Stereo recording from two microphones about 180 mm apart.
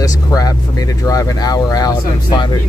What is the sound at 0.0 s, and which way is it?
Speech, 20° left (ahead or behind).